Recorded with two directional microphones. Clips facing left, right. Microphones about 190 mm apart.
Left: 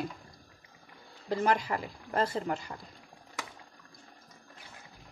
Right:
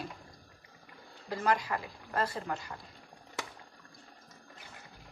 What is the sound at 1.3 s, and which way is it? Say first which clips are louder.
Speech: left 3 dB; 30° left (ahead or behind).